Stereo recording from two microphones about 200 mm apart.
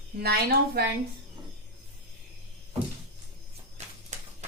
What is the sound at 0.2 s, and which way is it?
Speech, 50° right (ahead or behind).